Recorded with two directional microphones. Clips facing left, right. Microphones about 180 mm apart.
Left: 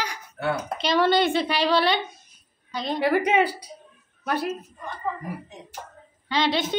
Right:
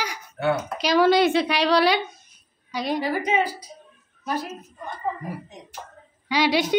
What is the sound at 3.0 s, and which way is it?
Speech, 65° left (ahead or behind).